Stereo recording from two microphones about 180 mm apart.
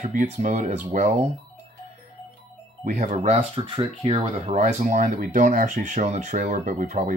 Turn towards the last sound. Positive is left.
turn(degrees=-45)  # may be behind; listen again after turning